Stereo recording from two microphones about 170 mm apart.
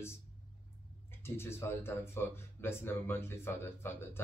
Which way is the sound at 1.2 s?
15° left (ahead or behind).